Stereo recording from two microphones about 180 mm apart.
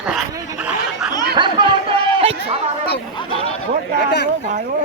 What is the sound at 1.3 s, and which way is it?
Chatter, 25° right (ahead or behind).